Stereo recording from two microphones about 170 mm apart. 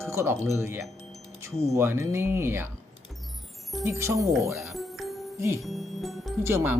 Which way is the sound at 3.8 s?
15° right (ahead or behind).